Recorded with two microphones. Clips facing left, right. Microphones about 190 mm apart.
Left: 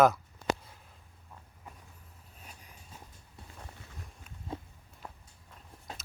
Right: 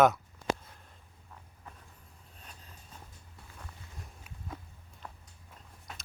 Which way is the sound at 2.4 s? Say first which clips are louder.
Left 1 dB; 10° left (ahead or behind).